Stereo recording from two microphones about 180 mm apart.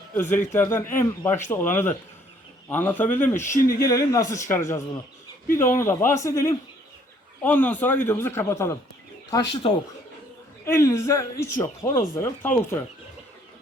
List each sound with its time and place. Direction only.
0.1 s a man's voice: 10° left (ahead or behind)
3.5 s speech: 55° left (ahead or behind)
3.8 s a man's voice: 20° left (ahead or behind)
7.4 s a man's voice: 10° left (ahead or behind)
9.3 s speech: 30° left (ahead or behind)
10.7 s a man's voice: 15° left (ahead or behind)